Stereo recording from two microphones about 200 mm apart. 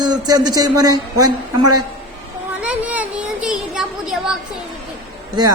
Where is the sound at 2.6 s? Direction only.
5° right (ahead or behind).